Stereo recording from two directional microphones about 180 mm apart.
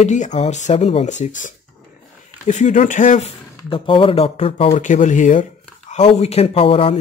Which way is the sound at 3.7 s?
30° left (ahead or behind).